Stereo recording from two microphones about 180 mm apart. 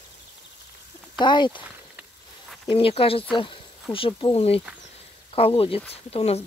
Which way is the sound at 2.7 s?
30° left (ahead or behind).